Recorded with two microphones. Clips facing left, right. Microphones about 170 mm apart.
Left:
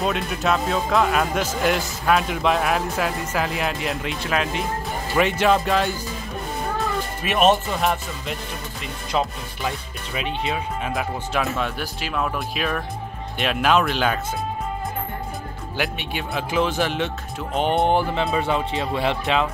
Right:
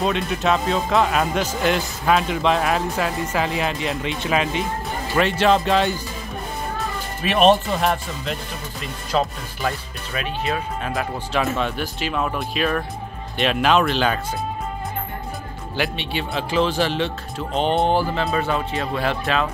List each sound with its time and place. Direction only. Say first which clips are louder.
0.0 s speech: right 2 dB; centre (ahead or behind)
7.3 s speech: right 2 dB; 10° left (ahead or behind)
10.9 s speech: right 2 dB; 5° left (ahead or behind)
15.7 s speech: right 2 dB; 10° left (ahead or behind)